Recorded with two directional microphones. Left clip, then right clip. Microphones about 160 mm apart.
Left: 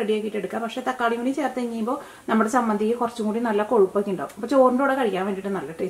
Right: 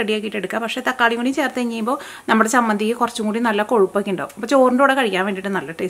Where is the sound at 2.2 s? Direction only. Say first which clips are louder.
Right 6 dB; 35° right (ahead or behind).